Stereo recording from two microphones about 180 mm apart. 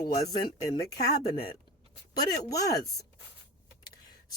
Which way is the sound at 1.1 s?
60° left (ahead or behind).